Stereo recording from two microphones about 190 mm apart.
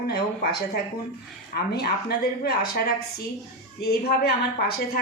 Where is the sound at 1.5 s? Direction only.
55° left (ahead or behind).